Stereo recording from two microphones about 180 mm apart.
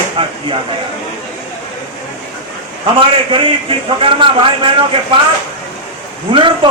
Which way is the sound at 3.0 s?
30° right (ahead or behind).